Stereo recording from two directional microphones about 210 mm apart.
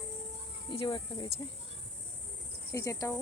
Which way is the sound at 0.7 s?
25° left (ahead or behind).